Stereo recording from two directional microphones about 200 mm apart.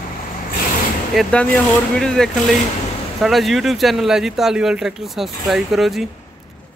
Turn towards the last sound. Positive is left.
turn(degrees=0)  # may be behind; listen again after turning